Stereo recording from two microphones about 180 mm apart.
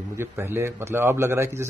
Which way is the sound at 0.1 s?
10° right (ahead or behind).